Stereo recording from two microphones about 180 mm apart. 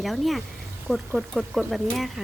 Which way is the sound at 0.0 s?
Centre (ahead or behind).